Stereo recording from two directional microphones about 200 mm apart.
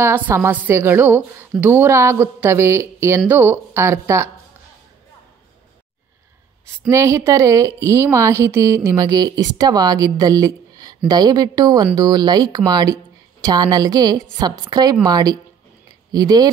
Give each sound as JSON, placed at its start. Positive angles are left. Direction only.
{"t": 0.0, "sound": "a woman's voice", "side_deg": -10}
{"t": 6.9, "sound": "a woman's voice", "side_deg": -15}